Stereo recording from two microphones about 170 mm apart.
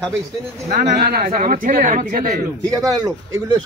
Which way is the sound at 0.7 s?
60° right (ahead or behind).